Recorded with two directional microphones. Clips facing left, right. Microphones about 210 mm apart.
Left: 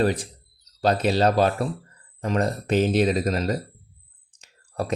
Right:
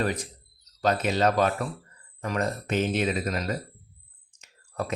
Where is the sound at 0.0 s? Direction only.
30° left (ahead or behind).